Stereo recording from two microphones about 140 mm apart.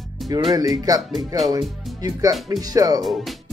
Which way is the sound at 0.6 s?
25° right (ahead or behind).